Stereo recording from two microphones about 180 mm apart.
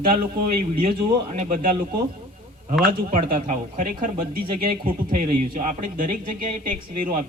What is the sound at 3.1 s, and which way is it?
Speech, 45° right (ahead or behind).